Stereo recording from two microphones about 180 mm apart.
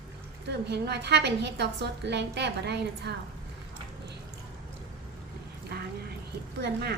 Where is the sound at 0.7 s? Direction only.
65° right (ahead or behind).